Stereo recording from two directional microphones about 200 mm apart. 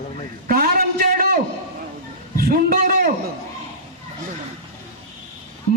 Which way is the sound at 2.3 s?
45° right (ahead or behind).